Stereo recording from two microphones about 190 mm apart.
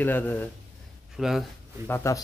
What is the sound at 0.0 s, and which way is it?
Speech, 10° left (ahead or behind).